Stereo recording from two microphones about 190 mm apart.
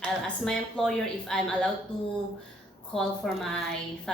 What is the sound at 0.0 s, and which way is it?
Speech, centre (ahead or behind).